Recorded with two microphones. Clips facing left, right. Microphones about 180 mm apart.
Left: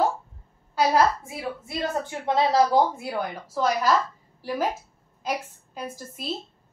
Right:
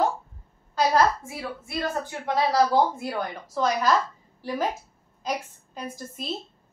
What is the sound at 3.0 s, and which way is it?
Speech, 10° left (ahead or behind).